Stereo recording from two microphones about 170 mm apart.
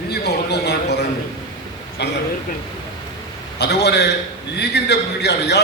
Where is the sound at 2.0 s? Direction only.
80° left.